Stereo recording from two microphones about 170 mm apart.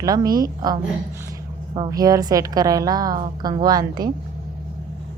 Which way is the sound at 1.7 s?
25° right (ahead or behind).